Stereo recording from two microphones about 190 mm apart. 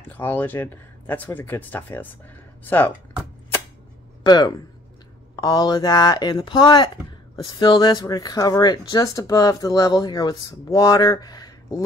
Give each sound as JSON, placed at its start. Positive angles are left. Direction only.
{"t": 0.1, "sound": "speech", "side_deg": 10}
{"t": 4.2, "sound": "speech", "side_deg": 20}